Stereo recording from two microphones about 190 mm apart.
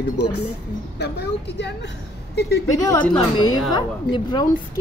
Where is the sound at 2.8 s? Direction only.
20° left (ahead or behind).